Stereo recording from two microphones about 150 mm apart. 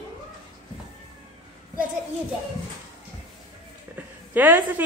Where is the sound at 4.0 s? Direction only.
10° right (ahead or behind).